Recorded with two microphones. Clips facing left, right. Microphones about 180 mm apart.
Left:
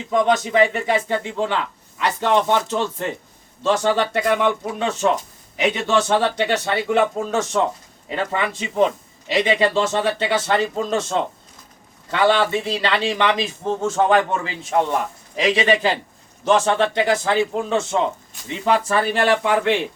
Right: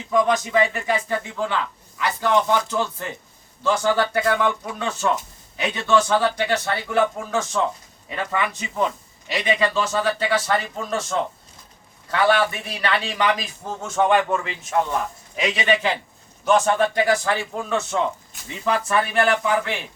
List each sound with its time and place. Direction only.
0.1 s speech: 25° left (ahead or behind)
12.1 s a man's voice: 25° left (ahead or behind)